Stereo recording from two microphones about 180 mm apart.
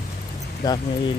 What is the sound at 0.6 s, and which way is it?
Speech, 20° left (ahead or behind).